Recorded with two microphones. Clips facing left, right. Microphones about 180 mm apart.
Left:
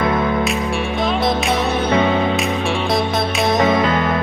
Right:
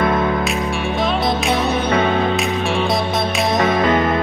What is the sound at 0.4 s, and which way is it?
Music, centre (ahead or behind).